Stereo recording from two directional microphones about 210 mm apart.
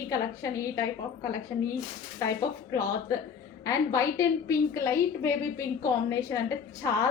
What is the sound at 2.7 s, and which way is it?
A woman's voice, 15° left (ahead or behind).